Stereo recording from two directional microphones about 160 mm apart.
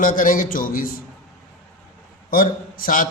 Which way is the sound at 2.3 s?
60° left (ahead or behind).